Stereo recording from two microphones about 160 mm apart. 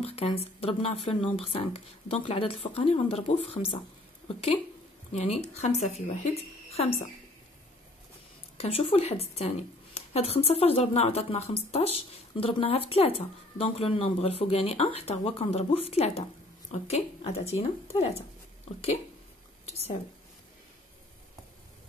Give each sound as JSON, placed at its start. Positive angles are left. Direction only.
{"t": 0.0, "sound": "a woman's voice", "side_deg": 40}
{"t": 5.1, "sound": "a woman's voice", "side_deg": 40}
{"t": 8.5, "sound": "a woman's voice", "side_deg": 40}